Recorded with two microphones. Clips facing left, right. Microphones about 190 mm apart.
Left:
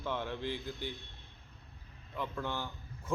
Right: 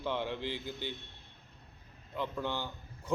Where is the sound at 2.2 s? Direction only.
Centre (ahead or behind).